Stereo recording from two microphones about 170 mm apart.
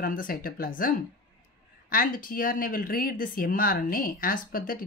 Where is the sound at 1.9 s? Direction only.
55° left (ahead or behind).